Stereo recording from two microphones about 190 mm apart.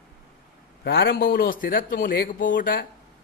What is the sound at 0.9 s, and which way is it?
A man's voice, 60° left (ahead or behind).